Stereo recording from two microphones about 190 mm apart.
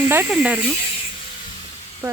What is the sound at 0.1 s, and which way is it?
Speech, 10° right (ahead or behind).